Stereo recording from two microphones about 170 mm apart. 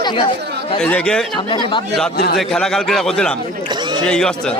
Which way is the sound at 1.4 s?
30° left (ahead or behind).